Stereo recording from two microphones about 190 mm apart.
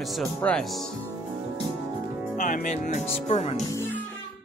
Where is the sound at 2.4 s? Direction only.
45° left (ahead or behind).